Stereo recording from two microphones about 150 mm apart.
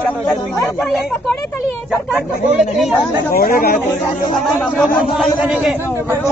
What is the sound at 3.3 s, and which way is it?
Speech, 80° left.